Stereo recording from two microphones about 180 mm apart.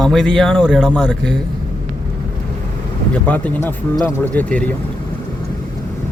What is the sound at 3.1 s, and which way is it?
Speech, 10° left (ahead or behind).